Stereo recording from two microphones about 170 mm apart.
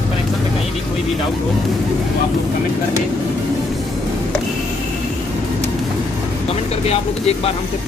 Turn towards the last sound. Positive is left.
turn(degrees=40)  # may be behind; listen again after turning